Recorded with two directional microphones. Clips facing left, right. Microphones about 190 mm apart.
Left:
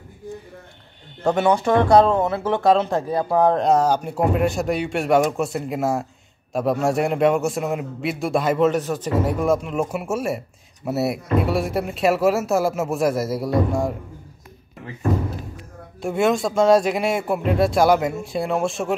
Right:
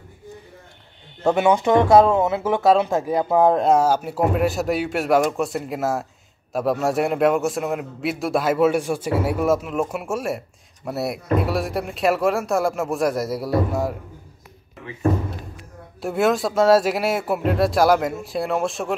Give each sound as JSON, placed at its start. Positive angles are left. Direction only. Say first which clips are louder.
{"t": 1.2, "sound": "speech", "louder": "right 1 dB", "side_deg": -5}
{"t": 3.1, "sound": "speech", "louder": "right 2 dB", "side_deg": -15}
{"t": 3.4, "sound": "a man's voice", "louder": "even", "side_deg": -5}
{"t": 16.0, "sound": "a man's voice", "louder": "even", "side_deg": 0}